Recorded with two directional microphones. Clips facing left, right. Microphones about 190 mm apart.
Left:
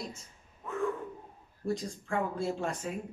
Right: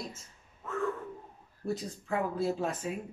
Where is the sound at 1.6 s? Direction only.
5° right (ahead or behind).